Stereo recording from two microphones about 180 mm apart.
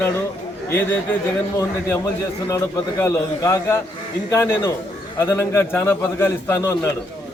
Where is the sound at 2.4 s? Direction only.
15° left (ahead or behind).